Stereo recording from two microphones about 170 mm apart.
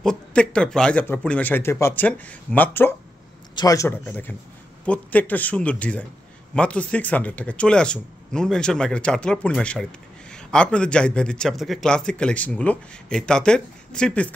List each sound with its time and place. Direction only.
0.0 s a man's voice: 5° left (ahead or behind)